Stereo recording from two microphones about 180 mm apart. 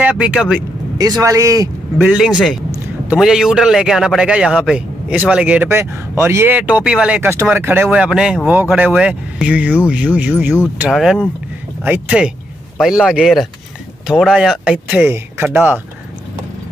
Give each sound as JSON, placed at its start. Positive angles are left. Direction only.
{"t": 0.0, "sound": "a man's voice", "side_deg": -5}
{"t": 0.9, "sound": "speech", "side_deg": -20}
{"t": 2.0, "sound": "a man's voice", "side_deg": -5}